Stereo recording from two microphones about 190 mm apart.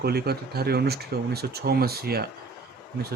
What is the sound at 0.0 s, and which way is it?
A man's voice, 55° right (ahead or behind).